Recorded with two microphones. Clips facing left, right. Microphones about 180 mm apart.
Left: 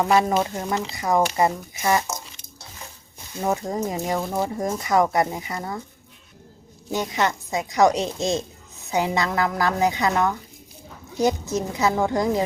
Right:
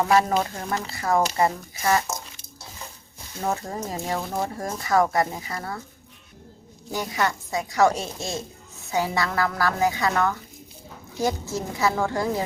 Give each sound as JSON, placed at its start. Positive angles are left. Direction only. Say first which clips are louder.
{"t": 0.0, "sound": "a woman's voice", "louder": "left 1 dB", "side_deg": 15}
{"t": 3.4, "sound": "speech", "louder": "left 4 dB", "side_deg": 15}
{"t": 4.3, "sound": "speech", "louder": "left 3 dB", "side_deg": 5}
{"t": 4.5, "sound": "a woman's voice", "louder": "left 1 dB", "side_deg": 20}
{"t": 6.9, "sound": "a woman's voice", "louder": "left 2 dB", "side_deg": 20}